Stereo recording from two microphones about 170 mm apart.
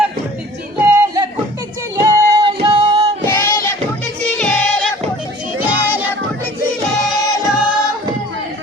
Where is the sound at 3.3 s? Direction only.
20° left (ahead or behind).